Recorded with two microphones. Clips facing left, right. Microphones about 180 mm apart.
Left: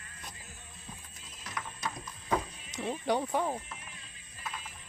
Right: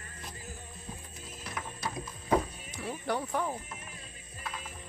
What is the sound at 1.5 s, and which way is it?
Music, 5° right (ahead or behind).